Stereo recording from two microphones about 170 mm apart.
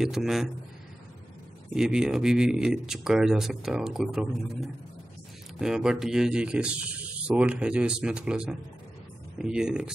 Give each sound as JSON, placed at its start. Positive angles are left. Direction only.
{"t": 0.0, "sound": "speech", "side_deg": 0}
{"t": 1.7, "sound": "speech", "side_deg": -5}